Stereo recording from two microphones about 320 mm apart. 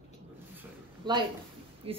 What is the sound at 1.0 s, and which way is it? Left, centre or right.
Speech, centre.